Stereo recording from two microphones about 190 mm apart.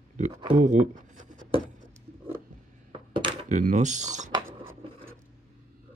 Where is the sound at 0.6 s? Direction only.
40° right (ahead or behind).